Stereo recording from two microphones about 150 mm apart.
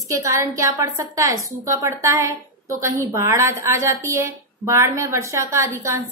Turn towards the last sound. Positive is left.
turn(degrees=-20)  # may be behind; listen again after turning